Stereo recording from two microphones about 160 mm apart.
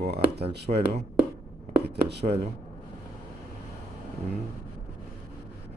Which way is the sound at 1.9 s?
90° right.